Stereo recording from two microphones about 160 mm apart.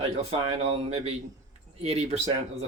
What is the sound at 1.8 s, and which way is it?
Speech, 40° right (ahead or behind).